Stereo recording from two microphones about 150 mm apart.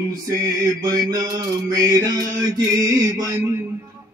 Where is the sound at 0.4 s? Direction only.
25° right (ahead or behind).